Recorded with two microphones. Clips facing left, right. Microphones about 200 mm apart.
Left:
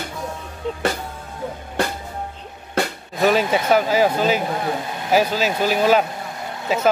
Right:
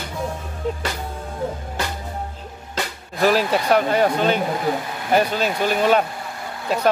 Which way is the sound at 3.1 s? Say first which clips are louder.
Even; centre (ahead or behind).